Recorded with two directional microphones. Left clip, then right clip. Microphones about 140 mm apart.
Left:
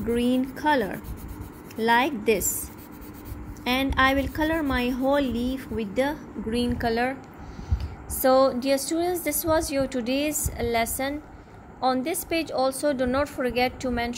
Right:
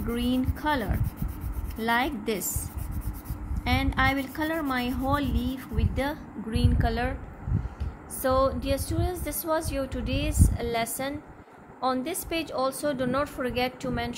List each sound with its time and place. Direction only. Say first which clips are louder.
0.1 s speech: left 5 dB; 10° left (ahead or behind)
3.6 s speech: left 4 dB; 15° left (ahead or behind)
8.2 s a woman's voice: left 5 dB; 30° left (ahead or behind)